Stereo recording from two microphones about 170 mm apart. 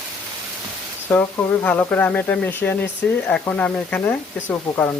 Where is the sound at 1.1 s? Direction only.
10° left (ahead or behind).